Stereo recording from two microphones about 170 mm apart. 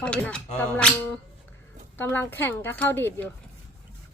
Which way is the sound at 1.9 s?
10° left (ahead or behind).